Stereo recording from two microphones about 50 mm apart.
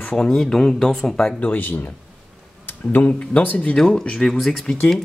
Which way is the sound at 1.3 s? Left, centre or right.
Left.